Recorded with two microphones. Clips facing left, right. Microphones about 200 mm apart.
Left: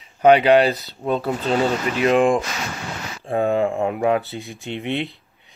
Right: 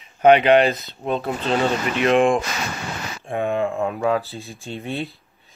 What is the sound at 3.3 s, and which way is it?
Speech, 35° left (ahead or behind).